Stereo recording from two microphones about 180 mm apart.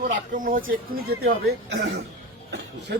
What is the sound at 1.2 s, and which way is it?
Speech, 70° right (ahead or behind).